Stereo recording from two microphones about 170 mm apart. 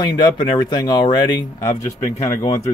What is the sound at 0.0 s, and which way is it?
Speech, 25° left (ahead or behind).